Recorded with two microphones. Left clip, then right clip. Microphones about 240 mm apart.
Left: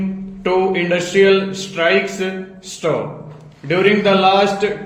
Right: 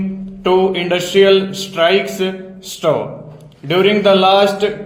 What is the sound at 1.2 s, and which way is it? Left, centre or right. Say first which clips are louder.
Speech: right 2 dB; right.